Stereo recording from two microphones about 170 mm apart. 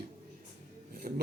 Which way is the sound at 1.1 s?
55° right (ahead or behind).